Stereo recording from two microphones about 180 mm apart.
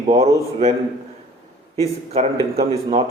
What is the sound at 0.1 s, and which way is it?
Speech, 40° right (ahead or behind).